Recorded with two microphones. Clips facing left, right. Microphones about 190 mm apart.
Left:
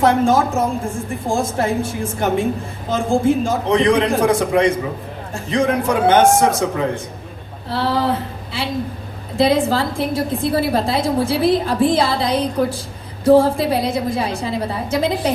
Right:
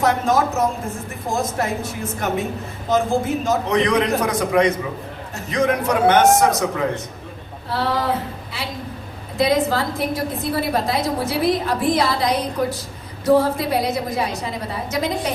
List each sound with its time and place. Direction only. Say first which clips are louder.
0.0 s a woman's voice: left 4 dB; 30° left (ahead or behind)
9.4 s a woman's voice: left 3 dB; 30° left (ahead or behind)